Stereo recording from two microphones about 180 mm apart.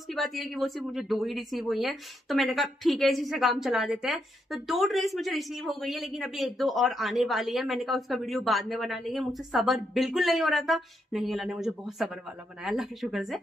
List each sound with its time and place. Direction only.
0.1 s speech: centre (ahead or behind)